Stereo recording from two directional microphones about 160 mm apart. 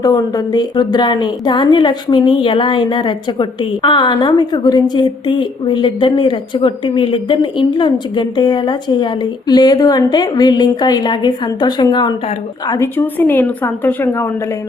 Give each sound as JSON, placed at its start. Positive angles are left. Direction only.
{"t": 0.0, "sound": "a woman's voice", "side_deg": 25}